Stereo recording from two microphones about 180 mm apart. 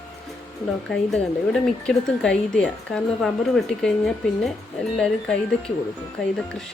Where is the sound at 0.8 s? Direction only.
Centre (ahead or behind).